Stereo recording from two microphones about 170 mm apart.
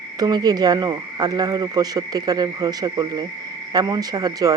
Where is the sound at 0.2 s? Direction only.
25° right (ahead or behind).